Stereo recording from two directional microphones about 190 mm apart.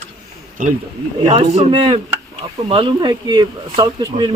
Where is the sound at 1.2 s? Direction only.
25° right (ahead or behind).